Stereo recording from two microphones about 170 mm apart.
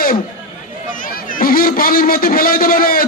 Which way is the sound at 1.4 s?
60° left (ahead or behind).